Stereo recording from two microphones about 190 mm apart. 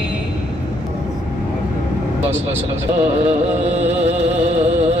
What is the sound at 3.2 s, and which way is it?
Music, 35° right (ahead or behind).